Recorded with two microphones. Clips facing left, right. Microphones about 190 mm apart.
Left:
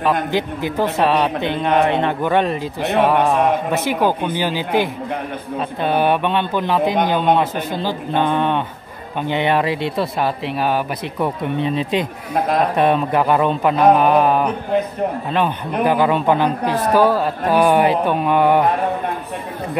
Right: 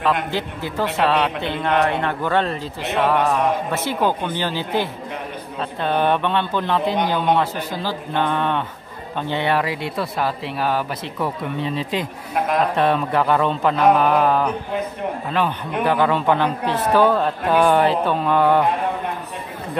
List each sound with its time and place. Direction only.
0.3 s speech: 15° left (ahead or behind)
15.8 s speech: 15° left (ahead or behind)
16.6 s speech: 40° left (ahead or behind)
16.9 s speech: 10° left (ahead or behind)